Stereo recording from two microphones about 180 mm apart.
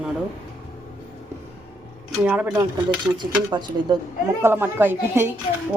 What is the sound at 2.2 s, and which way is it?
Speech, 10° right (ahead or behind).